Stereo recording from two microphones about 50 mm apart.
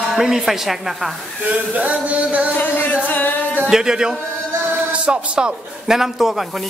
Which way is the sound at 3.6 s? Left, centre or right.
Centre.